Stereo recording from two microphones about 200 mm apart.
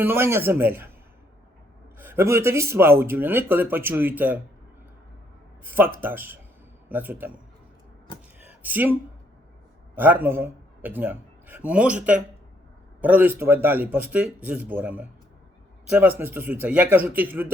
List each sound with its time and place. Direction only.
0.0 s speech: 10° right (ahead or behind)
2.0 s speech: 10° right (ahead or behind)
5.6 s a man's voice: 10° right (ahead or behind)
8.4 s a sound: 10° right (ahead or behind)
9.9 s a man's voice: 10° right (ahead or behind)